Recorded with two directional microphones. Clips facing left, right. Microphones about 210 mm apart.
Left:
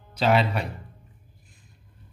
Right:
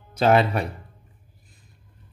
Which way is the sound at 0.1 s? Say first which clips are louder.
Right 3 dB; 50° right (ahead or behind).